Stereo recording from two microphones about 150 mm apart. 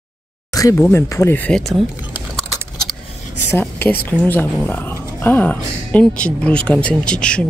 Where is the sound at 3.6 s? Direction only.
10° left (ahead or behind).